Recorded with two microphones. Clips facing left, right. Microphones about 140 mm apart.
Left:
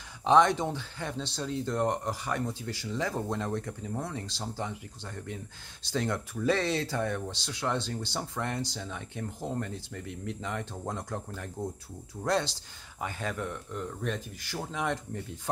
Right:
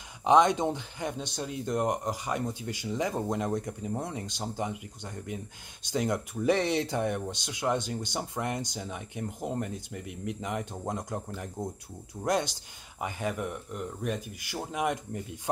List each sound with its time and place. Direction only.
0.2 s speech: 15° right (ahead or behind)